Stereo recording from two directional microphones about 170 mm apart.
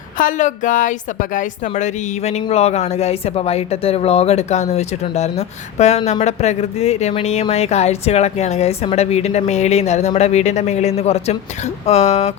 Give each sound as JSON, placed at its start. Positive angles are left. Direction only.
{"t": 0.2, "sound": "speech", "side_deg": 50}